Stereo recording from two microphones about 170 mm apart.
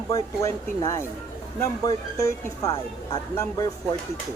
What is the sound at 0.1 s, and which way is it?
Speech, 20° left (ahead or behind).